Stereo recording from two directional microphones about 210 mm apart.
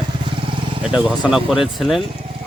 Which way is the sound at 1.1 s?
Centre (ahead or behind).